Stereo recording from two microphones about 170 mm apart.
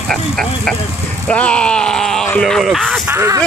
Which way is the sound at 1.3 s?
5° left (ahead or behind).